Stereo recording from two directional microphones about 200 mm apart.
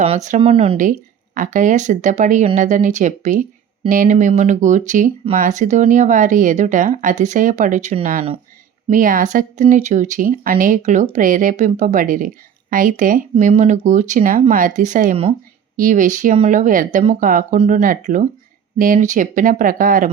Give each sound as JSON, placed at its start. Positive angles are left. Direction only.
{"t": 0.0, "sound": "speech", "side_deg": -35}
{"t": 15.8, "sound": "speech", "side_deg": -40}